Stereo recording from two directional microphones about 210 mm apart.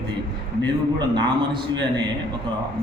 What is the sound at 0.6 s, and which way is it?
Speech, 20° right (ahead or behind).